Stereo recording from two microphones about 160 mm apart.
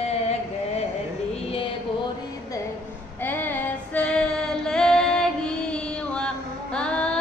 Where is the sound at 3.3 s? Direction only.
15° left (ahead or behind).